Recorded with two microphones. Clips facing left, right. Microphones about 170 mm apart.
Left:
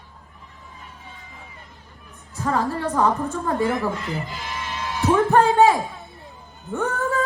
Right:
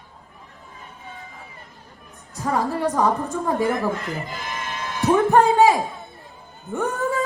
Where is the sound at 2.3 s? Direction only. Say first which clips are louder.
Even; 10° right (ahead or behind).